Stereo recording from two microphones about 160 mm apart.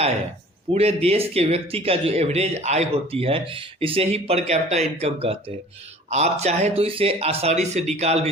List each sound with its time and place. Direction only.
0.7 s speech: 40° right (ahead or behind)